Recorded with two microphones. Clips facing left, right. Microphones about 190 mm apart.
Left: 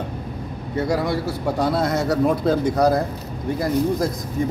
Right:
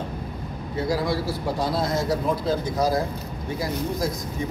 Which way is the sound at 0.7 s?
60° left (ahead or behind).